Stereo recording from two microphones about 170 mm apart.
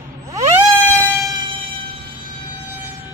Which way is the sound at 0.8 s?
15° left (ahead or behind).